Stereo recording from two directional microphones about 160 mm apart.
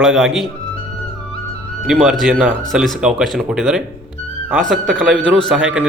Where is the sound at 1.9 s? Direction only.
5° right (ahead or behind).